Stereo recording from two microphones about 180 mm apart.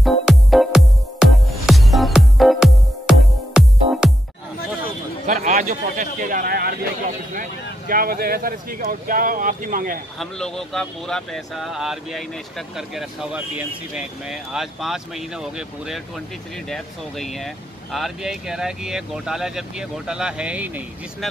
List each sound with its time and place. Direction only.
0.0 s music: centre (ahead or behind)
5.2 s a man's voice: 45° right (ahead or behind)
10.1 s speech: centre (ahead or behind)